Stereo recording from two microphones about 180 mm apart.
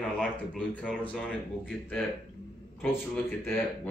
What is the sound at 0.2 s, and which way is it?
Speech, 5° left (ahead or behind).